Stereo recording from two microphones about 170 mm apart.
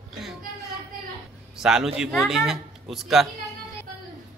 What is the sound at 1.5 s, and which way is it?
Speech, 5° right (ahead or behind).